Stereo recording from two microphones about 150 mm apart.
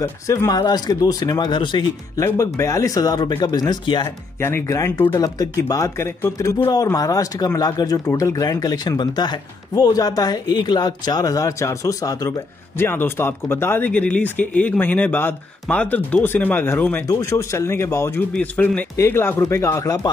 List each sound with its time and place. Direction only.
0.0 s a man's voice: 20° left (ahead or behind)
2.2 s a man's voice: 20° left (ahead or behind)
4.4 s a man's voice: 15° left (ahead or behind)